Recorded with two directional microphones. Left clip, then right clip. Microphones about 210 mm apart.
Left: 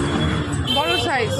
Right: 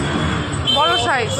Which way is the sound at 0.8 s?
15° left (ahead or behind).